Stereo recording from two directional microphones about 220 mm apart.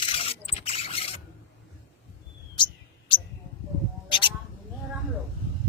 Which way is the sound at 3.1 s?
20° left (ahead or behind).